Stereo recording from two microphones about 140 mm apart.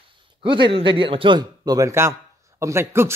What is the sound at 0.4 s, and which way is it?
A man's voice, 35° right (ahead or behind).